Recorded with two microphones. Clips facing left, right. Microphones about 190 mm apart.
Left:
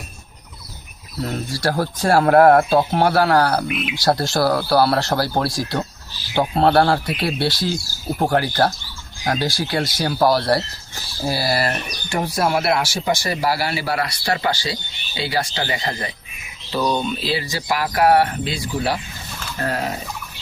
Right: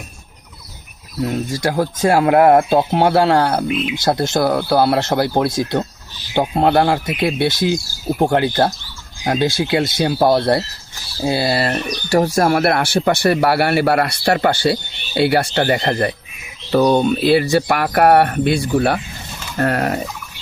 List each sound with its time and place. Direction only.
1.2 s speech: 20° right (ahead or behind)
12.0 s speech: 40° right (ahead or behind); by 20.0 s 60° right (ahead or behind)